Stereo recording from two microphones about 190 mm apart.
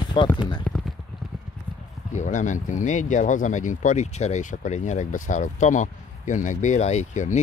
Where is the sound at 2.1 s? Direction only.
40° left (ahead or behind).